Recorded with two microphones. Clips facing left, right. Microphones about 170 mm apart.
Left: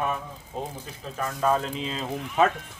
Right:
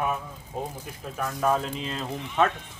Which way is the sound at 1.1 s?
Centre (ahead or behind).